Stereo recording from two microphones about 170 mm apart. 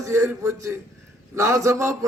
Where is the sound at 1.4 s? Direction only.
20° right (ahead or behind).